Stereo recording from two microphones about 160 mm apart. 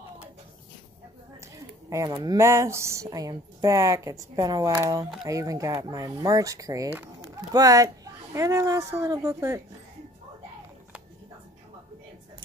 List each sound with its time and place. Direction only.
1.9 s speech: 20° right (ahead or behind)